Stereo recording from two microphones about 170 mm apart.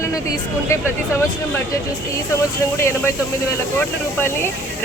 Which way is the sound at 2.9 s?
15° left (ahead or behind).